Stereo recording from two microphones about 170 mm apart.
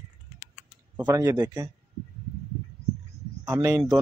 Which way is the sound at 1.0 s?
20° right (ahead or behind).